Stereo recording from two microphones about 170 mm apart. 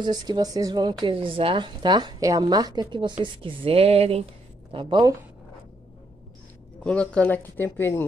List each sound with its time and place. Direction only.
0.0 s a woman's voice: 25° right (ahead or behind)
6.8 s speech: 5° left (ahead or behind)